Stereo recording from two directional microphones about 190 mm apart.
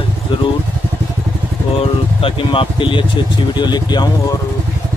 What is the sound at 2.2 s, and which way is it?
Speech, 25° left (ahead or behind).